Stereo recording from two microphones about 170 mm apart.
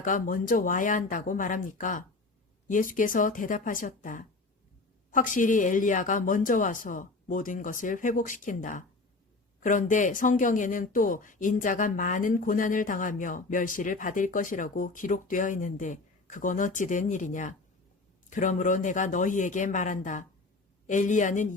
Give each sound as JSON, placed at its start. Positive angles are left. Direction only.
{"t": 0.0, "sound": "speech", "side_deg": 50}